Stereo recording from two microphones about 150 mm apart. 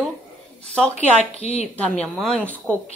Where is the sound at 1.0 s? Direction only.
45° left (ahead or behind).